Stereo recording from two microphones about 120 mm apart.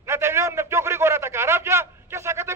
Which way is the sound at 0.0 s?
20° right (ahead or behind).